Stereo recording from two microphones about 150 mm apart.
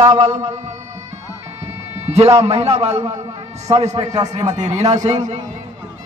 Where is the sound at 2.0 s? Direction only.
45° right (ahead or behind).